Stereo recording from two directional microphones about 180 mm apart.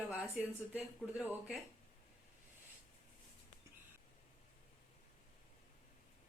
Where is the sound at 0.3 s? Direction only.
10° right (ahead or behind).